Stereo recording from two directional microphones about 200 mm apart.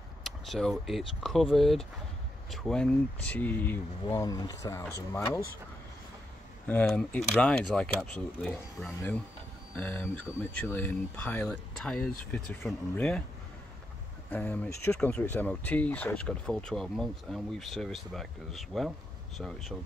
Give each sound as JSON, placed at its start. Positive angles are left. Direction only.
{"t": 0.2, "sound": "speech", "side_deg": 0}
{"t": 6.7, "sound": "speech", "side_deg": 5}
{"t": 14.3, "sound": "speech", "side_deg": 10}